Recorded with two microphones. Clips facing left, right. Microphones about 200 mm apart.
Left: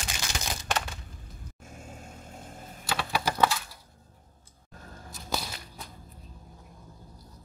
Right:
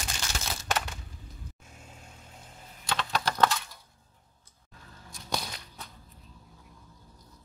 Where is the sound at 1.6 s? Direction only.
50° left (ahead or behind).